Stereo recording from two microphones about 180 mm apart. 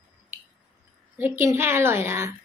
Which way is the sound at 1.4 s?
15° right (ahead or behind).